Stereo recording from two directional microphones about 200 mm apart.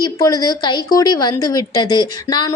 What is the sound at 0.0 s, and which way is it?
A woman's voice, 20° left (ahead or behind).